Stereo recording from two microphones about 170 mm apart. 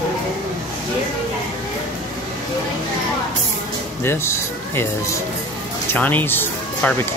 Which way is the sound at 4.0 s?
15° left (ahead or behind).